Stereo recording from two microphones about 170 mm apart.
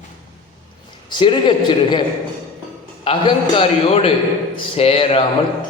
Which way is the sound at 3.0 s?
30° left (ahead or behind).